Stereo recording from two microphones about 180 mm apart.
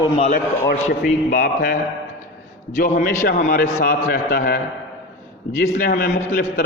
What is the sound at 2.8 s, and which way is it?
Speech, 50° left (ahead or behind).